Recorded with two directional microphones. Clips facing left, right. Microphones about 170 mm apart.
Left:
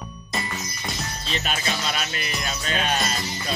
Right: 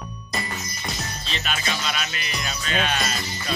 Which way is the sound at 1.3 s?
40° left (ahead or behind).